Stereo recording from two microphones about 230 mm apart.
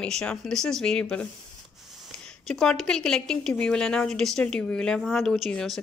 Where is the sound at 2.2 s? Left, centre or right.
Centre.